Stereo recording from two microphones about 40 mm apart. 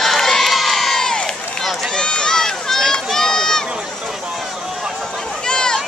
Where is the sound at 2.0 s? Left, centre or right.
Left.